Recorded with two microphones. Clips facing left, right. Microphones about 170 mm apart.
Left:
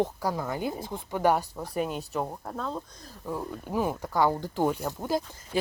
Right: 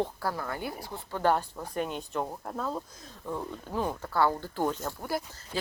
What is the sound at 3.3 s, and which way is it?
A woman's voice, 10° left (ahead or behind).